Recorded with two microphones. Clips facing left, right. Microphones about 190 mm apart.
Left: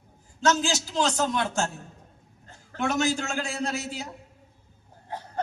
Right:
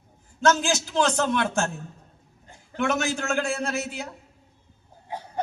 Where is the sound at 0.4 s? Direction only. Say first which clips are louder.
Right 2 dB; 60° right (ahead or behind).